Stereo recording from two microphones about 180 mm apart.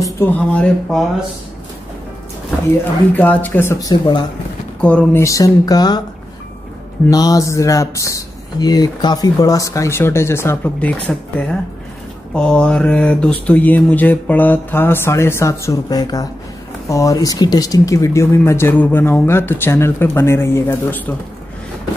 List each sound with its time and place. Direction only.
0.0 s speech: 10° left (ahead or behind)
3.2 s speech: 10° left (ahead or behind)
7.1 s speech: 20° left (ahead or behind)